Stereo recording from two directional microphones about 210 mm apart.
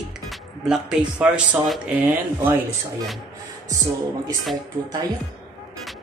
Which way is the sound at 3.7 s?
15° right (ahead or behind).